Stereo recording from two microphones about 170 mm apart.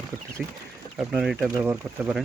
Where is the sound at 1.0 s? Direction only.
5° right (ahead or behind).